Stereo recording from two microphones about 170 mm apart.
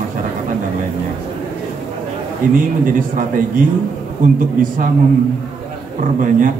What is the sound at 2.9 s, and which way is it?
A man's voice, 50° right (ahead or behind).